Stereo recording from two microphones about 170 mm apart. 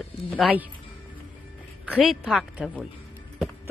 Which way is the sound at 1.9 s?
5° right (ahead or behind).